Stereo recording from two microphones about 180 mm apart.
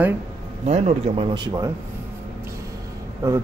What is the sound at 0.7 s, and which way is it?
Speech, 35° right (ahead or behind).